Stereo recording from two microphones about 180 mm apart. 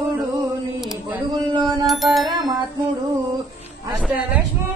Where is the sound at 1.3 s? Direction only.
25° right (ahead or behind).